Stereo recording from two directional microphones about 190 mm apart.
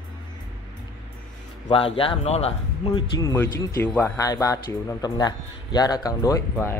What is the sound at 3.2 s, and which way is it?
A man's voice, 15° left (ahead or behind).